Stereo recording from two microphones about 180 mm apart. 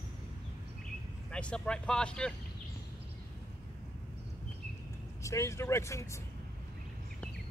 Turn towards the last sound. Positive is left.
turn(degrees=15)  # may be behind; listen again after turning